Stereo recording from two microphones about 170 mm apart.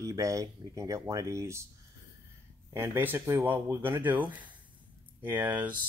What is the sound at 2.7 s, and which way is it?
Speech, 10° right (ahead or behind).